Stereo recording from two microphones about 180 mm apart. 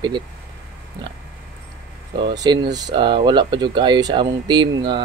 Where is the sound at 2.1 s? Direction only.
25° right (ahead or behind).